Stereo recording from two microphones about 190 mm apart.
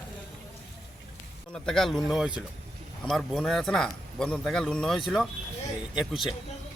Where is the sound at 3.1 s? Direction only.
Centre (ahead or behind).